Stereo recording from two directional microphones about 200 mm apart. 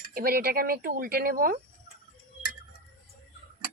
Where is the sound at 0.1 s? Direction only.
50° right (ahead or behind).